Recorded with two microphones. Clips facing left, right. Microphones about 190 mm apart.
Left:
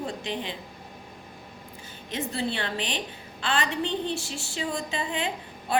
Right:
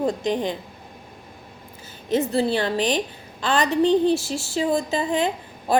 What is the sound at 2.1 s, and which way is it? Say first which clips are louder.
A woman's voice: right 9 dB; 40° right (ahead or behind).